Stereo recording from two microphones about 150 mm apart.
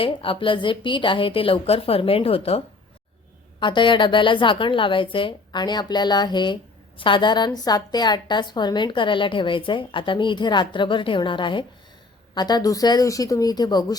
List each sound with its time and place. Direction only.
0.0 s a woman's voice: 35° left (ahead or behind)
3.6 s a woman's voice: 35° left (ahead or behind)